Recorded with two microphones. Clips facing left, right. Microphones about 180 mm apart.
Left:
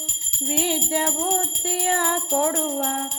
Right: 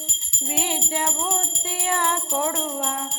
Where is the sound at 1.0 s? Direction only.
45° left (ahead or behind).